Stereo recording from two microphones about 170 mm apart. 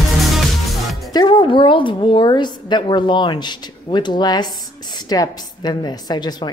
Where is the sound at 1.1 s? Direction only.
30° left (ahead or behind).